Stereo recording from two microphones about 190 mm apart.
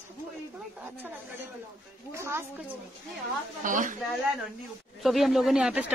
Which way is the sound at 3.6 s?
45° right (ahead or behind).